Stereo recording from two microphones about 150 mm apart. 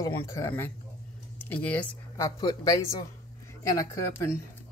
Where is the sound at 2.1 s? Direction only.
25° left (ahead or behind).